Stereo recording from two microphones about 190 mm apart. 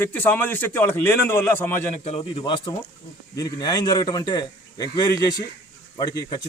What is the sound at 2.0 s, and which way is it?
Speech, 30° left (ahead or behind).